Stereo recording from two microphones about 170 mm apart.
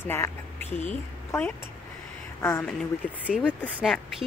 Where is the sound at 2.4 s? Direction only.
15° left (ahead or behind).